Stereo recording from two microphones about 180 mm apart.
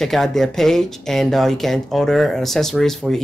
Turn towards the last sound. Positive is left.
turn(degrees=0)  # may be behind; listen again after turning